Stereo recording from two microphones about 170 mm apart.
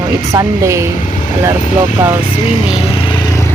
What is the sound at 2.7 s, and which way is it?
Vehicle, 30° left (ahead or behind).